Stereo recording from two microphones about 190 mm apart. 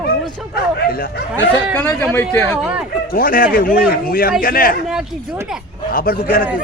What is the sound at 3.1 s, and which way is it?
A man's voice, 50° left (ahead or behind).